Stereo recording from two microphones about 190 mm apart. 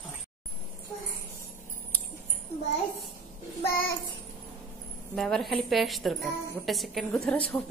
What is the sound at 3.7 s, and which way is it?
Child singing, 50° left (ahead or behind).